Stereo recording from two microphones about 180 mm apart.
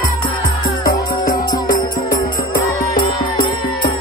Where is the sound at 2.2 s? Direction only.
25° left (ahead or behind).